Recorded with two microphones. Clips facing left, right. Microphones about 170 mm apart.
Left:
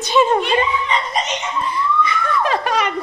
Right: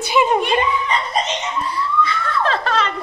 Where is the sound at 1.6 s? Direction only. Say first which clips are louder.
Left 2 dB; 20° left (ahead or behind).